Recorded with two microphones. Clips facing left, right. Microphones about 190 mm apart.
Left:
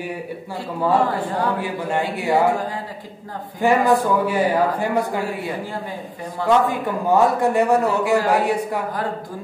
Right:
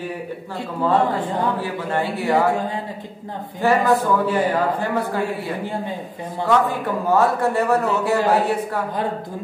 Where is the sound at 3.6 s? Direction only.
15° left (ahead or behind).